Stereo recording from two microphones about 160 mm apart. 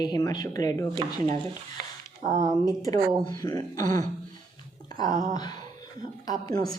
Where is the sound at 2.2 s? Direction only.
55° right (ahead or behind).